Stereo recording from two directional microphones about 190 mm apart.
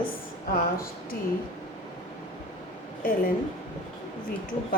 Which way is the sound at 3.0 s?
50° left (ahead or behind).